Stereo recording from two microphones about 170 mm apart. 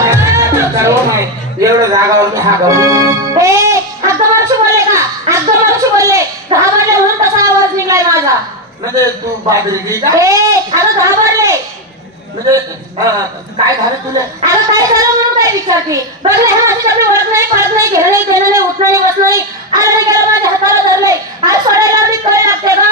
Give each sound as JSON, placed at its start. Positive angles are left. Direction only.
{"t": 0.0, "sound": "music", "side_deg": -15}
{"t": 8.8, "sound": "a man's voice", "side_deg": -20}
{"t": 14.4, "sound": "a man's voice", "side_deg": -20}